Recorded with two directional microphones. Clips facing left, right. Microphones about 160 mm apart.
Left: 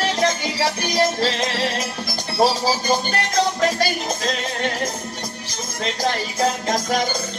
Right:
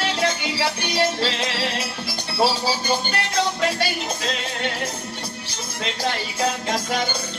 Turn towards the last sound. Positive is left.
turn(degrees=40)  # may be behind; listen again after turning